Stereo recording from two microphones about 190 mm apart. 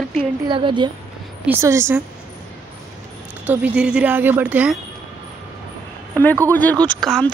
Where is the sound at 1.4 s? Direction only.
15° right (ahead or behind).